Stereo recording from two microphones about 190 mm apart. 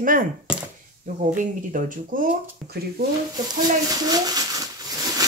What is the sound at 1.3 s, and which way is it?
Speech, 45° right (ahead or behind).